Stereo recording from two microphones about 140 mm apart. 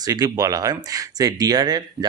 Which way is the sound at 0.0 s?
25° right (ahead or behind).